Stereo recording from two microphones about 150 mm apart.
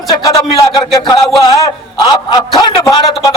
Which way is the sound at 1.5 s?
25° left (ahead or behind).